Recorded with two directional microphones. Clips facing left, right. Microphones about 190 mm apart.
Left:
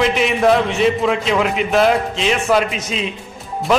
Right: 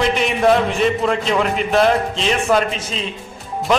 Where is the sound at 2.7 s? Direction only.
35° right (ahead or behind).